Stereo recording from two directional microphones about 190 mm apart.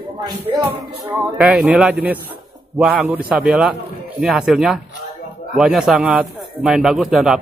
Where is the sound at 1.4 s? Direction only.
5° right (ahead or behind).